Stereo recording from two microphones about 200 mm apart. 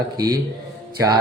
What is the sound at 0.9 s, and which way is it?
Music, 20° right (ahead or behind).